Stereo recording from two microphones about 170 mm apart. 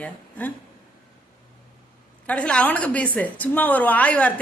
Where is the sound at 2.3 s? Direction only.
5° left (ahead or behind).